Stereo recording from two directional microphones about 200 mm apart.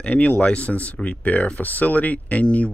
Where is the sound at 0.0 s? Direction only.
5° left (ahead or behind).